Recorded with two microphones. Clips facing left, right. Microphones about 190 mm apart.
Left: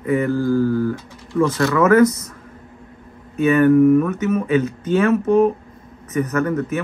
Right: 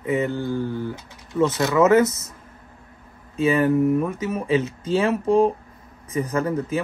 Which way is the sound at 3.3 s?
25° right (ahead or behind).